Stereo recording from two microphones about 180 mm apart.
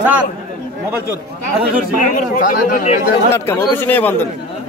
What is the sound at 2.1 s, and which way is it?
Speech, 50° left (ahead or behind).